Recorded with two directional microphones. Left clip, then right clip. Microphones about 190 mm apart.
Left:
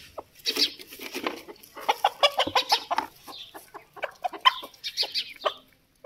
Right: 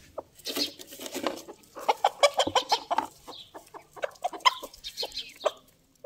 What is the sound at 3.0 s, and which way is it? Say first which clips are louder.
Chicken: left 1 dB; 15° right (ahead or behind).